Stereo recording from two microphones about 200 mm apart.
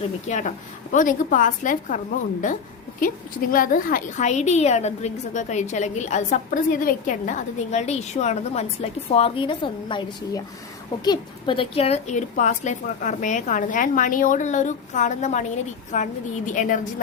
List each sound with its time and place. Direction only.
0.0 s a woman's voice: 35° left (ahead or behind)